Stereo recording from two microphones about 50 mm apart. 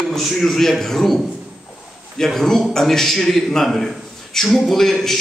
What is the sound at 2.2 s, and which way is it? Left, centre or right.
A man's voice, centre.